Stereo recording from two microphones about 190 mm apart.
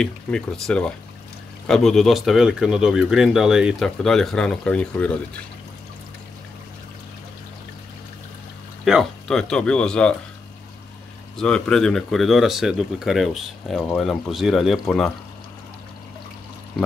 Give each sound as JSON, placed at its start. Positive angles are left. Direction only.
{"t": 0.0, "sound": "speech", "side_deg": 5}
{"t": 8.8, "sound": "speech", "side_deg": 0}
{"t": 11.3, "sound": "speech", "side_deg": 5}